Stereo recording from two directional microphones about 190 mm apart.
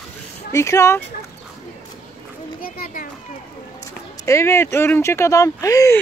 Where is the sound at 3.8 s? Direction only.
15° left (ahead or behind).